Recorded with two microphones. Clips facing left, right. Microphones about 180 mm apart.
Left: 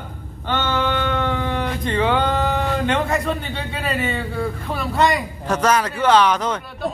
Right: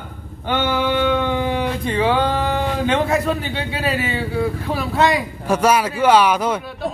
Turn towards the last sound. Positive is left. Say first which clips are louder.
# right 2 dB
turn(degrees=-10)  # may be behind; listen again after turning